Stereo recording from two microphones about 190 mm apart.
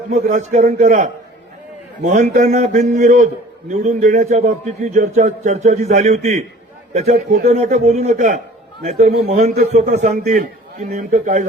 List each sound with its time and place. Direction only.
0.1 s a man's voice: 40° right (ahead or behind)